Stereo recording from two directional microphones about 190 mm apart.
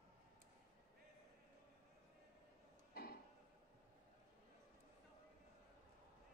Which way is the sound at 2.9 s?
55° left (ahead or behind).